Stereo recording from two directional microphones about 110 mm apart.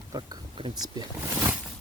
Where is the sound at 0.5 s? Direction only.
45° right (ahead or behind).